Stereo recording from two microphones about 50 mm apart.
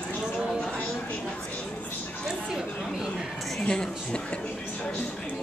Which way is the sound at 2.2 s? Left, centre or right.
Centre.